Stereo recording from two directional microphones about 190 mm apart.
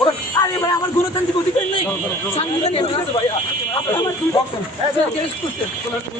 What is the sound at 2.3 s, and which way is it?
Speech, 30° left (ahead or behind).